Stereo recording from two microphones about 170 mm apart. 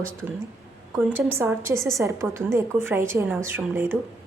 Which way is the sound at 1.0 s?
10° right (ahead or behind).